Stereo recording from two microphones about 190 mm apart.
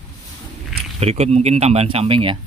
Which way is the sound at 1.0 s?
35° right (ahead or behind).